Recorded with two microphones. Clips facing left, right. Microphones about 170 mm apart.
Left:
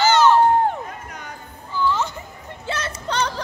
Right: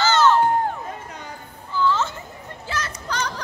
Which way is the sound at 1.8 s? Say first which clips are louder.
Even; 15° left (ahead or behind).